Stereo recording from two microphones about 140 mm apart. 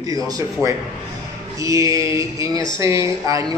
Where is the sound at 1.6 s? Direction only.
25° right (ahead or behind).